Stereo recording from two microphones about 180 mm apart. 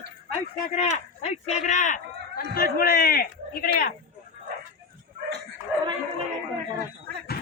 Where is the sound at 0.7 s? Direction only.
40° left (ahead or behind); by 3.9 s 55° left (ahead or behind).